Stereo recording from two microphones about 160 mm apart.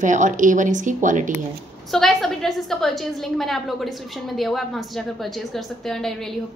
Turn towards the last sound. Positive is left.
turn(degrees=0)  # may be behind; listen again after turning